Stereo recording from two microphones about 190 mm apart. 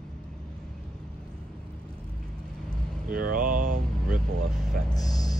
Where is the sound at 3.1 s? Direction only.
50° right (ahead or behind).